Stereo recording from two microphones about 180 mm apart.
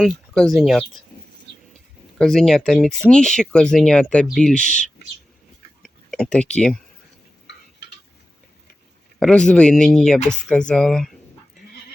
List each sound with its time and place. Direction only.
0.0 s speech: centre (ahead or behind)
2.1 s speech: centre (ahead or behind)
4.6 s speech: 40° left (ahead or behind)
5.8 s a sound: centre (ahead or behind)
9.1 s speech: 5° left (ahead or behind)